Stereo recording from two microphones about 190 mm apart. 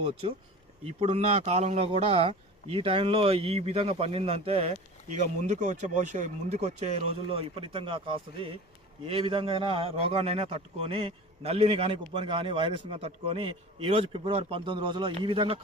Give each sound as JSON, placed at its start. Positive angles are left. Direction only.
{"t": 0.2, "sound": "a man's voice", "side_deg": -30}